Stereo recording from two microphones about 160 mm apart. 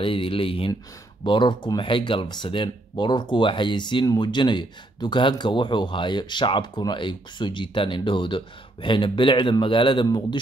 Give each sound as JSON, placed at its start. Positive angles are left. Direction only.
{"t": 0.0, "sound": "speech", "side_deg": 35}